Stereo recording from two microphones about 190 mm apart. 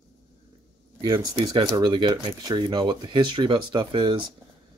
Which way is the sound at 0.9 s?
20° right (ahead or behind).